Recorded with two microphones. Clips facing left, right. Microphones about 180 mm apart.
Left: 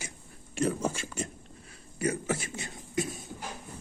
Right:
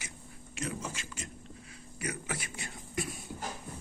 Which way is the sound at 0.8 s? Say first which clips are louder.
Left 9 dB; 50° left (ahead or behind).